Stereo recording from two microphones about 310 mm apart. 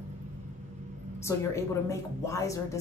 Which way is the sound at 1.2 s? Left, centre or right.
Centre.